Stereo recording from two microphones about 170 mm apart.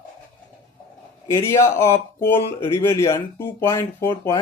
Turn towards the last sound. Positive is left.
turn(degrees=15)  # may be behind; listen again after turning